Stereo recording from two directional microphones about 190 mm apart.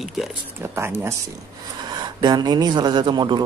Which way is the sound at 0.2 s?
10° right (ahead or behind).